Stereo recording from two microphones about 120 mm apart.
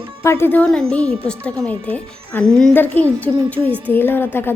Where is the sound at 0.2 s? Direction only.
20° left (ahead or behind).